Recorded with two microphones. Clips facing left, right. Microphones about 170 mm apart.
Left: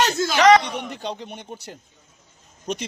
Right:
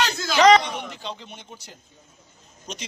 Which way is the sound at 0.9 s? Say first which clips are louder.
Left 5 dB; 55° left (ahead or behind).